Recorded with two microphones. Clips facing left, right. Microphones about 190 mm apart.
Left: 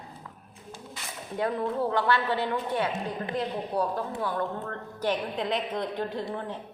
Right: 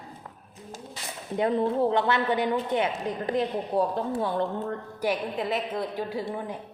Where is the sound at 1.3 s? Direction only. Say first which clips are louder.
Right 4 dB; 20° right (ahead or behind).